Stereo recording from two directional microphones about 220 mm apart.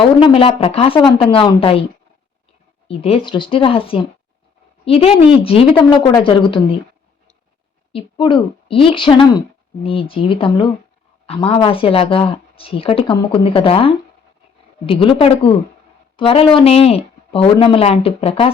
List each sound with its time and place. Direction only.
0.0 s speech: 25° left (ahead or behind)
2.8 s speech: 25° left (ahead or behind)
7.9 s speech: 20° left (ahead or behind)